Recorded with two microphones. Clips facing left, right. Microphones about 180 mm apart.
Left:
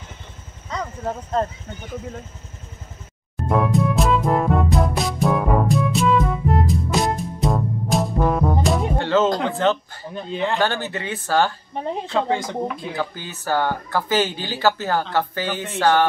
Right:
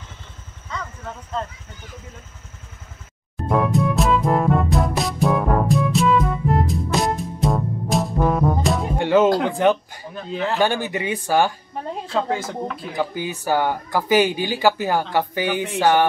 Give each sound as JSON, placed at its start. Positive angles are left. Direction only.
{"t": 0.7, "sound": "a sound", "side_deg": 35}
{"t": 3.4, "sound": "music", "side_deg": 0}
{"t": 8.9, "sound": "speech", "side_deg": -15}
{"t": 10.3, "sound": "speech", "side_deg": 0}
{"t": 10.6, "sound": "speech", "side_deg": -15}
{"t": 11.7, "sound": "speech", "side_deg": 25}
{"t": 12.1, "sound": "speech", "side_deg": -5}
{"t": 12.9, "sound": "speech", "side_deg": -15}